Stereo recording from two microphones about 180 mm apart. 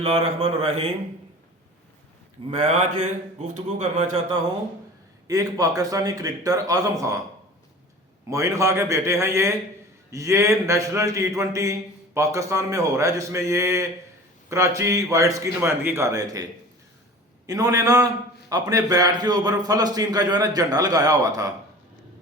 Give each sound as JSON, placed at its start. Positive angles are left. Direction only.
{"t": 0.0, "sound": "speech", "side_deg": -35}
{"t": 2.5, "sound": "speech", "side_deg": -40}
{"t": 5.3, "sound": "a man's voice", "side_deg": -20}
{"t": 8.3, "sound": "a man's voice", "side_deg": -15}